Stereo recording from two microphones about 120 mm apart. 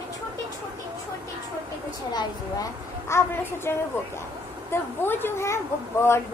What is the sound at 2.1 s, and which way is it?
A woman's voice, 25° left (ahead or behind).